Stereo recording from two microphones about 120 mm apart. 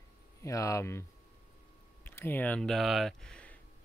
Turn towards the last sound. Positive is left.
turn(degrees=10)  # may be behind; listen again after turning